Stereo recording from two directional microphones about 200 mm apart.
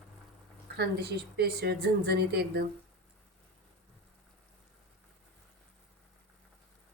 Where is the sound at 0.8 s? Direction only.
55° right (ahead or behind).